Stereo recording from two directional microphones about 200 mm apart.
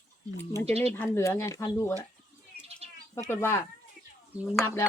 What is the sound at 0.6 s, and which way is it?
Speech, 30° right (ahead or behind).